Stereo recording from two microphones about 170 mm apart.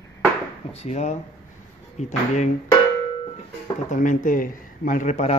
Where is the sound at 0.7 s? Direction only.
40° left (ahead or behind).